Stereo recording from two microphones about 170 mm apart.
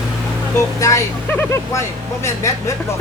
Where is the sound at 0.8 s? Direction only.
20° left (ahead or behind).